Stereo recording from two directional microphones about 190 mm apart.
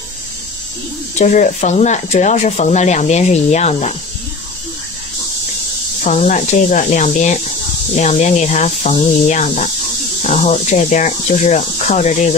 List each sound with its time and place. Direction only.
1.1 s speech: 40° left (ahead or behind)
6.0 s speech: 40° left (ahead or behind)